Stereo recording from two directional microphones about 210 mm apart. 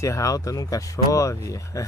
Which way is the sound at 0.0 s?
15° left (ahead or behind).